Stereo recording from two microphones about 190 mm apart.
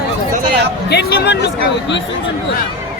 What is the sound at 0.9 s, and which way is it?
Speech, 60° left (ahead or behind).